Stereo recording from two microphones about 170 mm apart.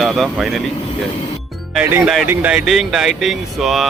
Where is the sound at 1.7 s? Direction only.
10° right (ahead or behind).